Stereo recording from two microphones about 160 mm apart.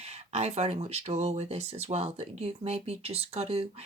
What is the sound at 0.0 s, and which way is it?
Speech, 40° right (ahead or behind).